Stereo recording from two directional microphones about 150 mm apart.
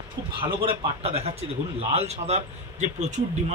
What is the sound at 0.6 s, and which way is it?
A man's voice, 40° right (ahead or behind).